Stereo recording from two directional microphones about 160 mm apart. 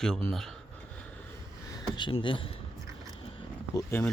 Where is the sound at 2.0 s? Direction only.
30° left (ahead or behind).